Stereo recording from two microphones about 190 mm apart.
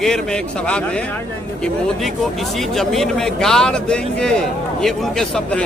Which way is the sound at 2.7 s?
Centre (ahead or behind).